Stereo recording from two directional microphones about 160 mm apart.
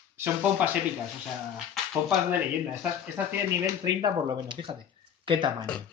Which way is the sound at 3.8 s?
30° right (ahead or behind).